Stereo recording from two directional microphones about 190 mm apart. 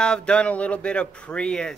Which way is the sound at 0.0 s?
5° left (ahead or behind).